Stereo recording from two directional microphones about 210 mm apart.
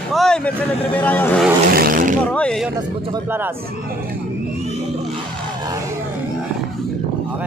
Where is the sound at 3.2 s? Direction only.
10° right (ahead or behind).